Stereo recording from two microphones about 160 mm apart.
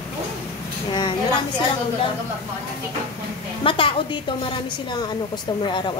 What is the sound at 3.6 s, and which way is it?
A woman's voice, 35° left (ahead or behind).